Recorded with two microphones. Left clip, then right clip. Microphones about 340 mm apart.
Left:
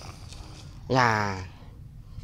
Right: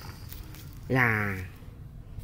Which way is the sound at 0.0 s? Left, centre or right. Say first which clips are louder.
Left 1 dB; centre.